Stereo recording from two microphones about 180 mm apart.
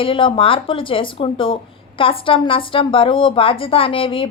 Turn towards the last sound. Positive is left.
turn(degrees=30)  # may be behind; listen again after turning